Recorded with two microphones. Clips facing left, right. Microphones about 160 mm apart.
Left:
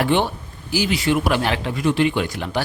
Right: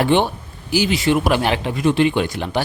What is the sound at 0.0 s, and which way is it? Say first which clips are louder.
Speech: right 3 dB; 25° right (ahead or behind).